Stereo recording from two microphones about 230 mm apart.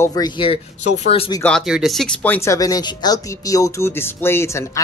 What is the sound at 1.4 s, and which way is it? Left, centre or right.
Speech, centre.